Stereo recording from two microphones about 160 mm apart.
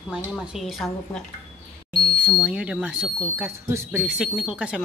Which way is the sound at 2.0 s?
10° right (ahead or behind).